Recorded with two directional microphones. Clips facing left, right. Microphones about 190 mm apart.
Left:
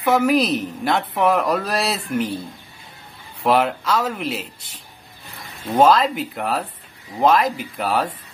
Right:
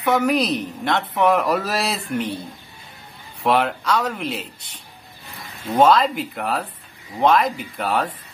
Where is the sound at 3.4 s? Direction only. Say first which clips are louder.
Left 1 dB; centre (ahead or behind).